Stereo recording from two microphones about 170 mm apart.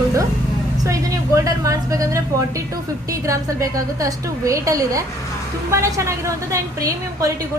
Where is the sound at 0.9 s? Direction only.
20° right (ahead or behind).